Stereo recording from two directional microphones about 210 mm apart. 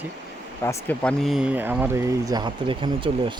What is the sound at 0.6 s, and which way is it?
Speech, 10° left (ahead or behind).